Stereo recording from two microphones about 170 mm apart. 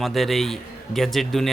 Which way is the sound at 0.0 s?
Centre (ahead or behind).